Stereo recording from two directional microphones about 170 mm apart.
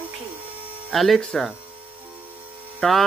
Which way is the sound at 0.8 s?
Centre (ahead or behind).